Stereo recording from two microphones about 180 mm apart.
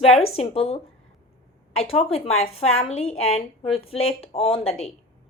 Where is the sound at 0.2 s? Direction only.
35° left (ahead or behind).